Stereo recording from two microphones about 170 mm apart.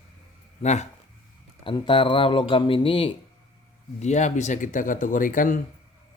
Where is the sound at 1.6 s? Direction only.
30° left (ahead or behind).